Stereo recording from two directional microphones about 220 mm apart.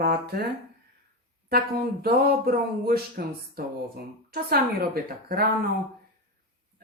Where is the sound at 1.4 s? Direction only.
45° right (ahead or behind).